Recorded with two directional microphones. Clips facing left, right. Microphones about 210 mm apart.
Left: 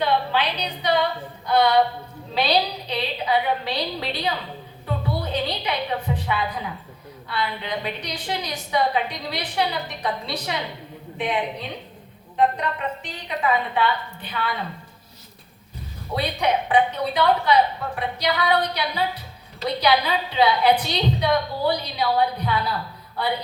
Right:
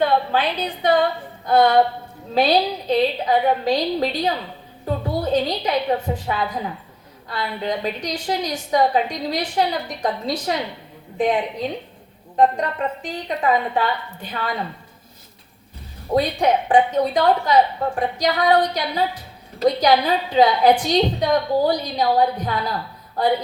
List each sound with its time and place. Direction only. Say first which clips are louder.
0.0 s a woman's voice: right 3 dB; 50° right (ahead or behind)
12.4 s a woman's voice: right 4 dB; 45° right (ahead or behind)
16.1 s a woman's voice: right 5 dB; 45° right (ahead or behind)